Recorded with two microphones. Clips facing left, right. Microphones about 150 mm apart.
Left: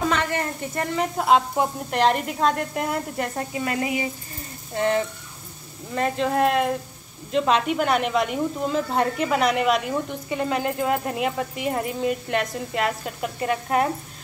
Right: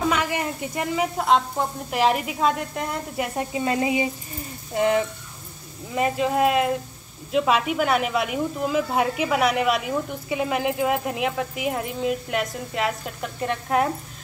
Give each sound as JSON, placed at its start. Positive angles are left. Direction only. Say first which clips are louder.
{"t": 0.1, "sound": "speech", "louder": "even", "side_deg": -10}
{"t": 1.1, "sound": "speech", "louder": "left 3 dB", "side_deg": 5}
{"t": 3.3, "sound": "speech", "louder": "right 5 dB", "side_deg": -20}